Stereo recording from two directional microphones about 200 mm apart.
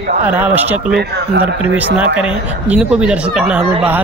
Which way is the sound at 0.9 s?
50° right (ahead or behind).